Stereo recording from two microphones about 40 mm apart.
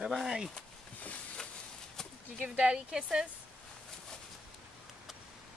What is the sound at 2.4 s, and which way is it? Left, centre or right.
Speech, right.